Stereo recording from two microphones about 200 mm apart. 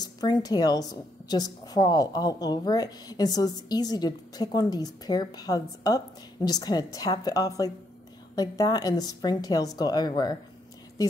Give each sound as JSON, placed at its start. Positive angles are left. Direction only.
{"t": 0.0, "sound": "a woman's voice", "side_deg": 20}